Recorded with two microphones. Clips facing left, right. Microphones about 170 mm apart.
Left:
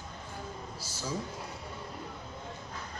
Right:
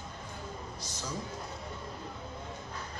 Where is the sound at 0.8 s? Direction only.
5° left (ahead or behind).